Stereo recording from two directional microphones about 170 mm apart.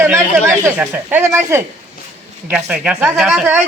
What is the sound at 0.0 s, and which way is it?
A man's voice, 15° right (ahead or behind).